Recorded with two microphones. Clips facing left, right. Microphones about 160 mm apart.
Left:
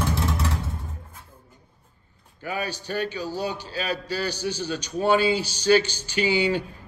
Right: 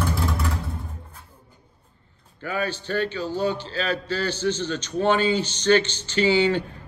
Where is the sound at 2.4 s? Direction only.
15° left (ahead or behind).